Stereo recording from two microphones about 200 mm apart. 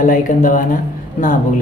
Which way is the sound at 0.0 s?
40° left (ahead or behind).